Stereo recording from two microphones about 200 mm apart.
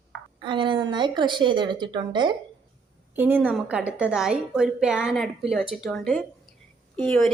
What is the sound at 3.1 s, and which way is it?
A woman's voice, 10° right (ahead or behind).